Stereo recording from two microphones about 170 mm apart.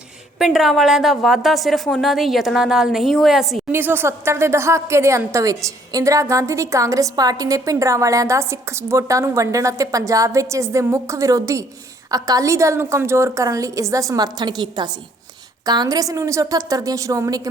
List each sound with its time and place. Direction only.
0.3 s a woman's voice: centre (ahead or behind)
3.7 s a woman's voice: 10° right (ahead or behind)